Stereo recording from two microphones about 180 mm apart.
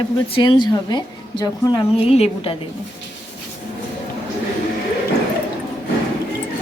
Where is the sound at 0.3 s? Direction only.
25° left (ahead or behind).